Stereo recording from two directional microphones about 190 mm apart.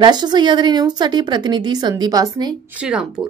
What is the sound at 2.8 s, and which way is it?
Speech, 5° right (ahead or behind).